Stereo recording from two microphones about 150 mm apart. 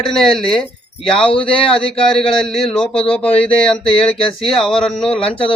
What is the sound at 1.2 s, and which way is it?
Speech, 35° left (ahead or behind).